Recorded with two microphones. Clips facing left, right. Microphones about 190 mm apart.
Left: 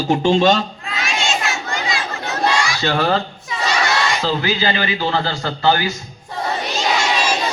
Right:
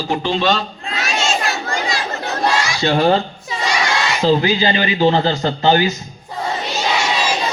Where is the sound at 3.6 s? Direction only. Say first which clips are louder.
Even; 10° right (ahead or behind).